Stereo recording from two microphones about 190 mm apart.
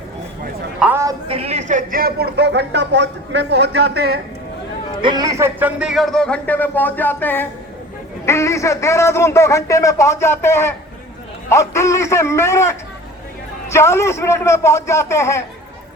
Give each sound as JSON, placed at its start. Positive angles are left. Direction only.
{"t": 0.8, "sound": "a sound", "side_deg": -10}
{"t": 1.3, "sound": "speech", "side_deg": -30}
{"t": 5.0, "sound": "a man's voice", "side_deg": -20}